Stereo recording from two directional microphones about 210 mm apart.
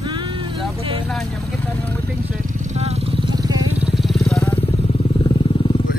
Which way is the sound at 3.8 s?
5° right (ahead or behind).